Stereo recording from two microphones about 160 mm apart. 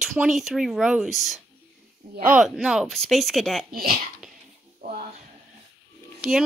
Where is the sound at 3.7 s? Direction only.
65° right (ahead or behind).